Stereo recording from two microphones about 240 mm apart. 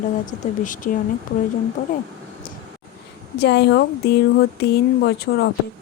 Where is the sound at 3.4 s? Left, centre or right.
Left.